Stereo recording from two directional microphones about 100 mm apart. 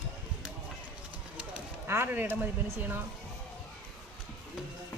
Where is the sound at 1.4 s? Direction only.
25° right (ahead or behind).